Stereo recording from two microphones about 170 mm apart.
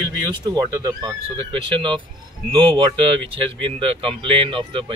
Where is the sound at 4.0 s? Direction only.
30° right (ahead or behind).